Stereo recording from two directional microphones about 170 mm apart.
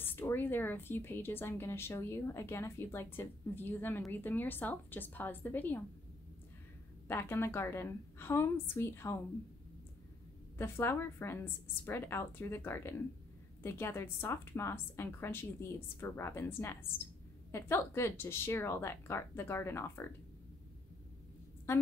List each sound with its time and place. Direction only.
0.0 s speech: 10° left (ahead or behind)
7.1 s speech: 15° left (ahead or behind)
10.6 s speech: 15° left (ahead or behind)
21.7 s a woman's voice: 15° left (ahead or behind)